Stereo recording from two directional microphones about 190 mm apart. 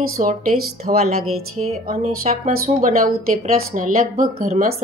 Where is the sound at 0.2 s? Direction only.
40° right (ahead or behind).